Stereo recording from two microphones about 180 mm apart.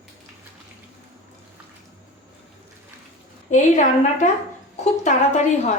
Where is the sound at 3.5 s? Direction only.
45° left (ahead or behind).